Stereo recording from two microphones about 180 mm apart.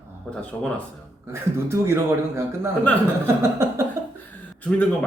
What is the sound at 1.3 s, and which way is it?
Speech, 15° right (ahead or behind).